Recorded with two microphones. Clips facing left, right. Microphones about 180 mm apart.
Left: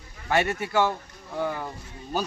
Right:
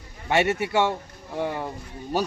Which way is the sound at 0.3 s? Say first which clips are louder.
Right 3 dB; 20° right (ahead or behind).